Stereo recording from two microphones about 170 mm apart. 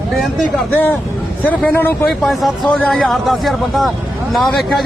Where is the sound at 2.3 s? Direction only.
Centre (ahead or behind).